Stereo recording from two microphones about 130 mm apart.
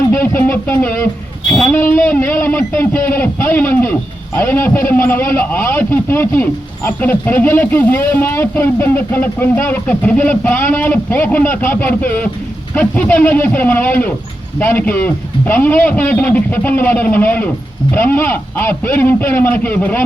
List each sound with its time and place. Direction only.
0.1 s speech: 15° left (ahead or behind)
1.5 s a sound: 5° left (ahead or behind)
1.7 s a man's voice: 15° left (ahead or behind)